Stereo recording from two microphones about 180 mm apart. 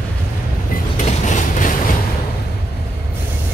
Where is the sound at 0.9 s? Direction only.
45° left (ahead or behind).